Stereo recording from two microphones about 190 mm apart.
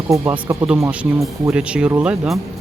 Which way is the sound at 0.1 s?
15° right (ahead or behind).